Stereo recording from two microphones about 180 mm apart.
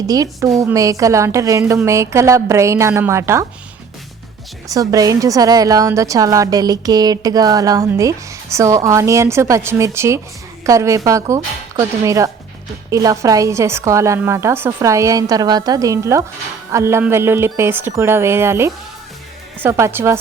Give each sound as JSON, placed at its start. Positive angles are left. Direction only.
{"t": 0.1, "sound": "a woman's voice", "side_deg": -20}
{"t": 4.7, "sound": "a woman's voice", "side_deg": -20}